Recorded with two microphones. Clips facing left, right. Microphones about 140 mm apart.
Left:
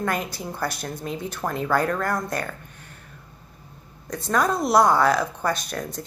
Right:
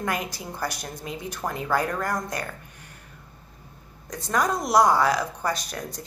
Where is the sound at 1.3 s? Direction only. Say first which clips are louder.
Left 2 dB; 55° left (ahead or behind).